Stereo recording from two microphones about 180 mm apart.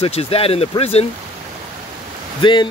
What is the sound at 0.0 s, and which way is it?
Speech, 35° left (ahead or behind).